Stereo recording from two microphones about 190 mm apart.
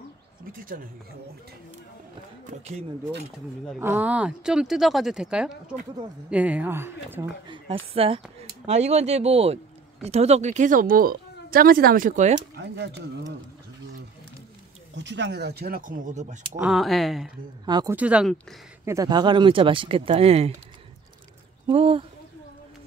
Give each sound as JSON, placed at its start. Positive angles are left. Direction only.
{"t": 0.5, "sound": "speech", "side_deg": -45}
{"t": 3.8, "sound": "speech", "side_deg": -10}
{"t": 7.4, "sound": "speech", "side_deg": -25}
{"t": 12.4, "sound": "speech", "side_deg": -65}
{"t": 15.0, "sound": "speech", "side_deg": -70}
{"t": 16.6, "sound": "speech", "side_deg": 0}
{"t": 17.6, "sound": "speech", "side_deg": -20}
{"t": 17.9, "sound": "speech", "side_deg": -5}
{"t": 18.9, "sound": "speech", "side_deg": -20}
{"t": 21.6, "sound": "speech", "side_deg": -30}